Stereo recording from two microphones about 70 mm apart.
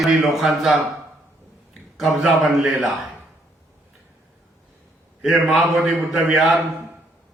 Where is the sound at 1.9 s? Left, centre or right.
Centre.